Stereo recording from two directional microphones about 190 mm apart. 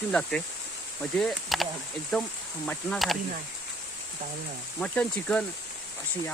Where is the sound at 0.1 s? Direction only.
5° left (ahead or behind).